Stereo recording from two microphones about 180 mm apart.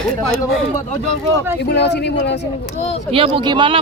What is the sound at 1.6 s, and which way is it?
Speech, 70° left (ahead or behind).